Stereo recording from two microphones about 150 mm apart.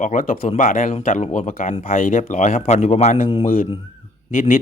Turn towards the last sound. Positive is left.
turn(degrees=65)  # may be behind; listen again after turning